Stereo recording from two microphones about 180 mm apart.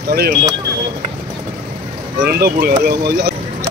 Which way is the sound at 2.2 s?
60° right (ahead or behind).